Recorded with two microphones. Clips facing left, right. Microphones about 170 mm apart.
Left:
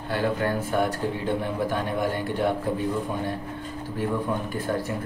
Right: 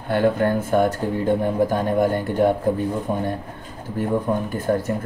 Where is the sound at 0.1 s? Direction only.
55° right (ahead or behind).